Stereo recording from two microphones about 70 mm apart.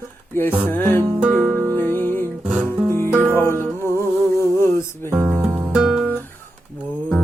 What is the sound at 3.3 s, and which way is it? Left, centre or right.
Music, left.